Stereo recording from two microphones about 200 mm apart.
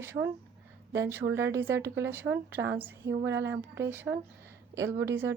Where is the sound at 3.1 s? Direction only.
65° right (ahead or behind).